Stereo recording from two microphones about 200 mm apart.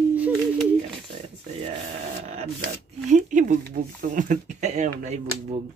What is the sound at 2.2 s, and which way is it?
Speech, 35° right (ahead or behind).